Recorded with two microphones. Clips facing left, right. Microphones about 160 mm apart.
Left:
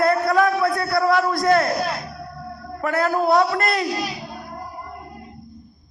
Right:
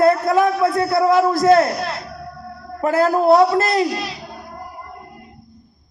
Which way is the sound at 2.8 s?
30° right (ahead or behind).